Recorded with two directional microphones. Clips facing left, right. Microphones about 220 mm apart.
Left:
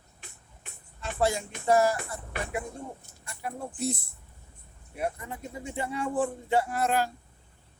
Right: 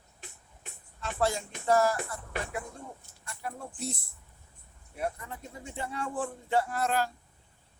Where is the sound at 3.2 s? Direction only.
5° left (ahead or behind).